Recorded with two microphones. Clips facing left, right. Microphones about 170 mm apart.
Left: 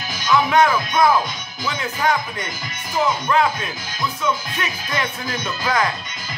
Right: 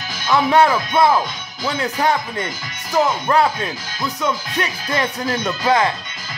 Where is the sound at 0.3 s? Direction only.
35° right (ahead or behind).